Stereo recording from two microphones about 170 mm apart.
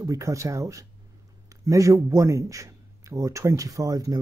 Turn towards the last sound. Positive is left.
turn(degrees=-20)  # may be behind; listen again after turning